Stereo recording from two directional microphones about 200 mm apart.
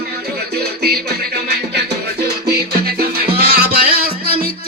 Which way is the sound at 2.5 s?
50° right (ahead or behind).